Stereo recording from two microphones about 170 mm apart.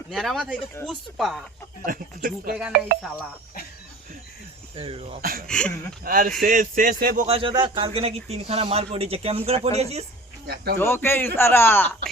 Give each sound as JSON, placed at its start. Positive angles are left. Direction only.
{"t": 0.1, "sound": "speech", "side_deg": 0}
{"t": 1.9, "sound": "speech", "side_deg": -55}
{"t": 4.7, "sound": "speech", "side_deg": -35}
{"t": 5.5, "sound": "speech", "side_deg": 5}
{"t": 6.1, "sound": "speech", "side_deg": -55}
{"t": 7.3, "sound": "speech", "side_deg": -30}
{"t": 10.4, "sound": "speech", "side_deg": -65}
{"t": 10.8, "sound": "a man's voice", "side_deg": 15}